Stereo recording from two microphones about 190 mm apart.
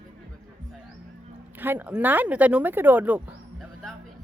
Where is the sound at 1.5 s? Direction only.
10° right (ahead or behind).